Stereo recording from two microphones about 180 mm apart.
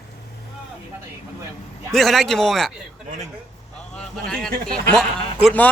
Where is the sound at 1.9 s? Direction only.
Centre (ahead or behind).